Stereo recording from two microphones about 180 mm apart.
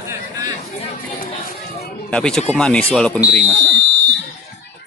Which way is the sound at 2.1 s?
5° left (ahead or behind).